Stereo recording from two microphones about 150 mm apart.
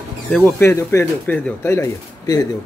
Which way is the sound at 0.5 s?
20° left (ahead or behind).